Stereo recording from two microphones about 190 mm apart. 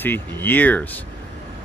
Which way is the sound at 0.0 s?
10° left (ahead or behind).